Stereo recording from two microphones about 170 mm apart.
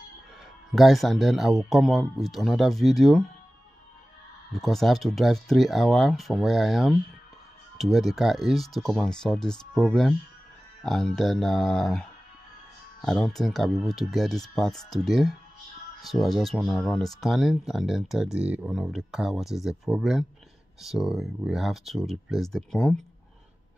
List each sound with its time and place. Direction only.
0.7 s speech: centre (ahead or behind)
4.5 s speech: centre (ahead or behind)